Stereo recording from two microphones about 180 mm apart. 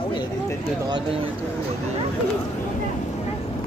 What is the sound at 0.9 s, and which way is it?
Speech, 30° right (ahead or behind).